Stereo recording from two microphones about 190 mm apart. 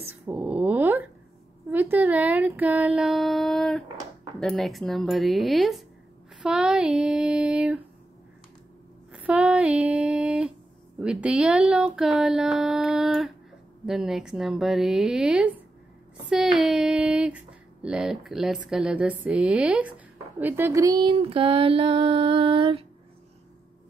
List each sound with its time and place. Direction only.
0.3 s dog: 10° right (ahead or behind)
1.7 s speech: 10° right (ahead or behind)
9.1 s speech: 5° right (ahead or behind)
21.1 s music: 30° right (ahead or behind)